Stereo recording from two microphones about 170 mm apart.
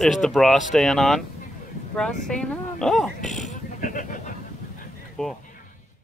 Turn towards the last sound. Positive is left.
turn(degrees=0)  # may be behind; listen again after turning